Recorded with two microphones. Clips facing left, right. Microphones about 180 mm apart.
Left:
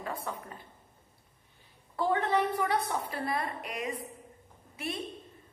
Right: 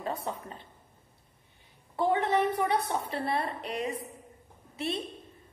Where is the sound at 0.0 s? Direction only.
25° right (ahead or behind).